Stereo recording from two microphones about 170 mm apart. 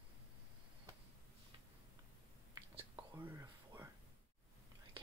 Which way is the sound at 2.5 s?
30° right (ahead or behind).